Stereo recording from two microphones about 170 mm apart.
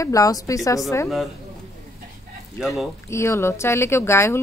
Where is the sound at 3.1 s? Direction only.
15° left (ahead or behind).